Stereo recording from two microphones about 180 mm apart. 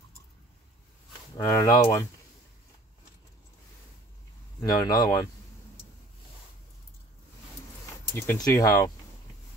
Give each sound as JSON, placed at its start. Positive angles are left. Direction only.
{"t": 1.3, "sound": "speech", "side_deg": 15}
{"t": 4.6, "sound": "speech", "side_deg": 20}
{"t": 8.2, "sound": "speech", "side_deg": 15}